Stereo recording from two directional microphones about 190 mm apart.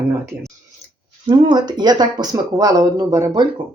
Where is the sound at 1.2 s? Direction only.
25° right (ahead or behind).